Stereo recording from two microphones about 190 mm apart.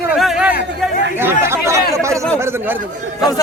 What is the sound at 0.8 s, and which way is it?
Chatter, 10° right (ahead or behind).